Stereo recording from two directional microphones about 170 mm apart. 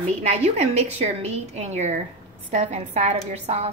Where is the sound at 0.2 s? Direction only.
35° right (ahead or behind).